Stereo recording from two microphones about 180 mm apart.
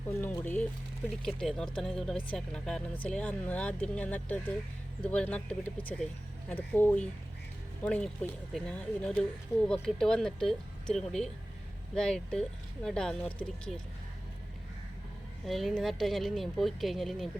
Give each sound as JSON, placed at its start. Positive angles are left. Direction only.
{"t": 0.2, "sound": "speech", "side_deg": 10}
{"t": 15.4, "sound": "speech", "side_deg": 0}